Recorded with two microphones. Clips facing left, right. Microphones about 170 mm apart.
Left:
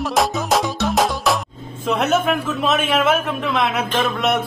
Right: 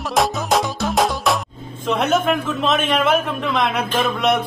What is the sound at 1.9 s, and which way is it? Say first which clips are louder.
A man's voice: even; centre (ahead or behind).